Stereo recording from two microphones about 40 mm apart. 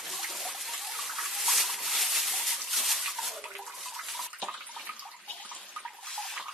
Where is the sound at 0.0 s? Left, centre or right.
Centre.